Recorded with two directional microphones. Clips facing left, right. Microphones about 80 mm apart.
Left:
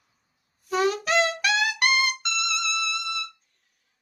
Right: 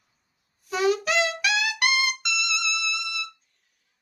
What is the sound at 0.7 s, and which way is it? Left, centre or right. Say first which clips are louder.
Music: even; left.